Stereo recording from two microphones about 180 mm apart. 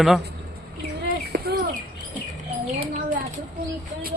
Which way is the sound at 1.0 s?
55° right (ahead or behind).